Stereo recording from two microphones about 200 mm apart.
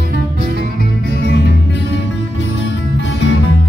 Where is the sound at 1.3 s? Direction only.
60° left (ahead or behind).